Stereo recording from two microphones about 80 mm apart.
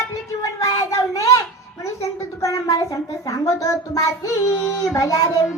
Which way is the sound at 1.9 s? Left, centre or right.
Left.